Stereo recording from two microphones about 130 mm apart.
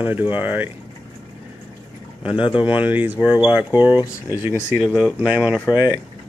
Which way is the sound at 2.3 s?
40° left (ahead or behind).